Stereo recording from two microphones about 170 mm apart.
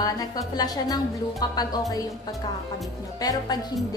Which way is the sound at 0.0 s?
20° left (ahead or behind).